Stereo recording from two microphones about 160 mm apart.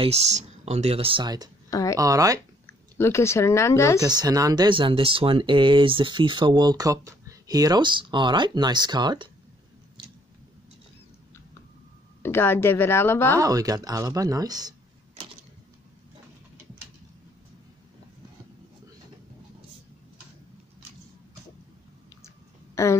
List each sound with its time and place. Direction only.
0.0 s speech: 40° right (ahead or behind); by 1.5 s 25° right (ahead or behind)
1.7 s speech: 20° left (ahead or behind)
2.0 s speech: 20° right (ahead or behind)
2.6 s speech: 15° left (ahead or behind)
4.0 s speech: 25° right (ahead or behind)
12.2 s a woman's voice: 15° left (ahead or behind)
13.4 s speech: 20° right (ahead or behind)
22.8 s speech: 15° left (ahead or behind)